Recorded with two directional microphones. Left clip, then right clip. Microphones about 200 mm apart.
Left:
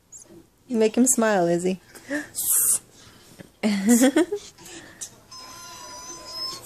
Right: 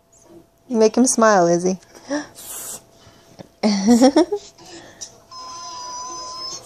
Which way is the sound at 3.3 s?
15° right (ahead or behind).